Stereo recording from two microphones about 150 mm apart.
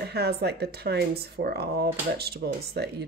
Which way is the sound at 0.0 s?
90° right.